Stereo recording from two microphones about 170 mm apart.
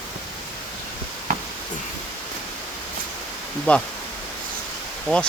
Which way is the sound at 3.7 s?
10° left (ahead or behind).